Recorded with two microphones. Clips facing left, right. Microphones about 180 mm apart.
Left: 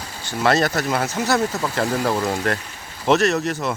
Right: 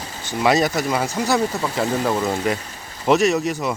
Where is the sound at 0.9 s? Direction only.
5° left (ahead or behind); by 3.6 s 15° right (ahead or behind).